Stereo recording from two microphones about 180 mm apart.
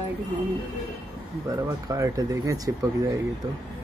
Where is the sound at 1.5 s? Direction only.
20° right (ahead or behind).